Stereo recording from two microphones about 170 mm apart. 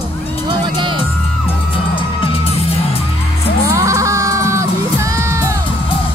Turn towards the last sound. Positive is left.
turn(degrees=-15)  # may be behind; listen again after turning